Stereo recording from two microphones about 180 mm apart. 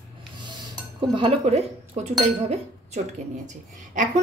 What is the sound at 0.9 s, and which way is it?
Speech, 30° right (ahead or behind).